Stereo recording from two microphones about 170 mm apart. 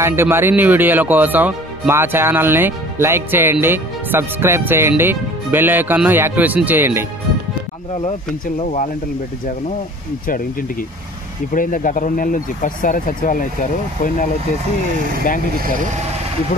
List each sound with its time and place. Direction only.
0.0 s speech: 15° right (ahead or behind)
11.5 s speech: 55° left (ahead or behind)